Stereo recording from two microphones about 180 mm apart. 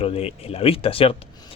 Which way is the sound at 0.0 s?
30° left (ahead or behind).